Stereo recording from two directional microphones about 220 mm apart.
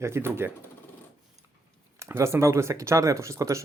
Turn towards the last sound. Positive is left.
turn(degrees=-15)  # may be behind; listen again after turning